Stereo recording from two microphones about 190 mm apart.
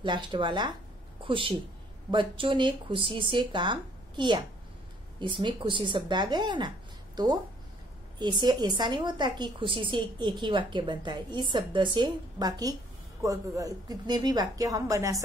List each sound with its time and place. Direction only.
0.0 s a woman's voice: 25° right (ahead or behind)
8.2 s a woman's voice: 25° right (ahead or behind)